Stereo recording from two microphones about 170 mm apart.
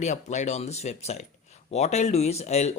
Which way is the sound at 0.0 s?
45° left (ahead or behind).